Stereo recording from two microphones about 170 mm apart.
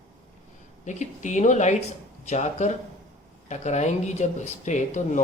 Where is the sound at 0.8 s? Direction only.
45° left (ahead or behind).